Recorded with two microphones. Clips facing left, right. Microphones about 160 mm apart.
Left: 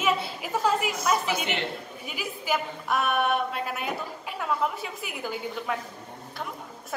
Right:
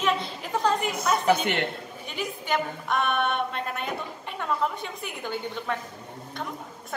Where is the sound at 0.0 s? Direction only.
5° left (ahead or behind).